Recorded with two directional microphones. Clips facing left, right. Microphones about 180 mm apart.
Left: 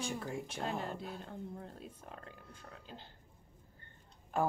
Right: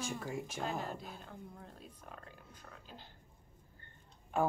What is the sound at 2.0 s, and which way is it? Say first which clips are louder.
Speech: left 2 dB; 20° left (ahead or behind).